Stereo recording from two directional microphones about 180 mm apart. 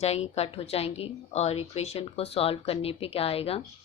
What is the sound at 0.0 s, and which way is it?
A woman's voice, 35° left (ahead or behind).